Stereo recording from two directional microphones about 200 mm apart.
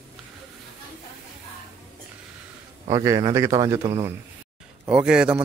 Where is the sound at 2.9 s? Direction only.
20° right (ahead or behind).